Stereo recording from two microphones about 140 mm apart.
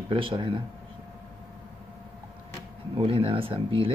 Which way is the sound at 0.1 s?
40° right (ahead or behind).